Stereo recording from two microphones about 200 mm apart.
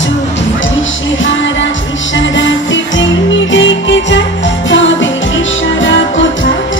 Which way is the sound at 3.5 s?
65° left (ahead or behind).